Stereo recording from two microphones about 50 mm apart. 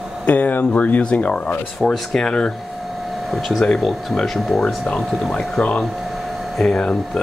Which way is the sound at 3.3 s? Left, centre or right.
Centre.